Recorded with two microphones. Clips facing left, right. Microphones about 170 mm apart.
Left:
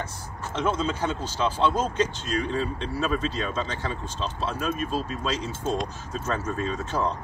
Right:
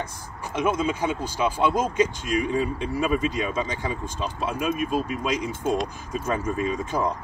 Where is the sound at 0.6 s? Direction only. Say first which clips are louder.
Right 2 dB; 10° right (ahead or behind).